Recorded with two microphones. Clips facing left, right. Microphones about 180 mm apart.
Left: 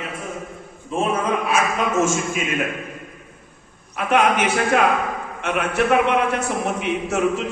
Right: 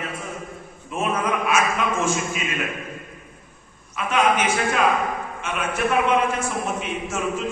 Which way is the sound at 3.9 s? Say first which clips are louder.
Left 2 dB; 60° left (ahead or behind).